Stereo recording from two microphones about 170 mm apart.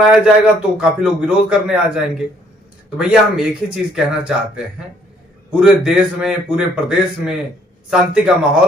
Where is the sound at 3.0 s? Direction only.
5° right (ahead or behind).